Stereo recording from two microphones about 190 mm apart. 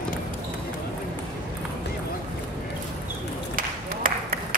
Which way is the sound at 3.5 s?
45° right (ahead or behind).